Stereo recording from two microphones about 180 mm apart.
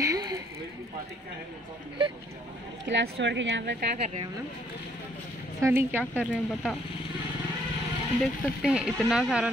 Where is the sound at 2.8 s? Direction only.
80° right.